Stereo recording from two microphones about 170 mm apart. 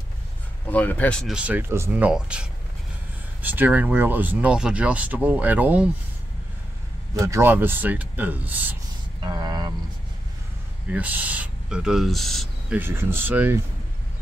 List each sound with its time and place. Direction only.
0.7 s speech: 10° left (ahead or behind); by 2.4 s 5° right (ahead or behind)
3.4 s speech: 10° right (ahead or behind)
7.2 s speech: 15° right (ahead or behind)
9.2 s vehicle: 25° right (ahead or behind)
10.9 s speech: 10° right (ahead or behind)
12.7 s speech: 15° right (ahead or behind)